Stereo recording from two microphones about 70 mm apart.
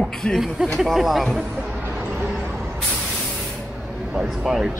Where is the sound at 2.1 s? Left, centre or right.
Right.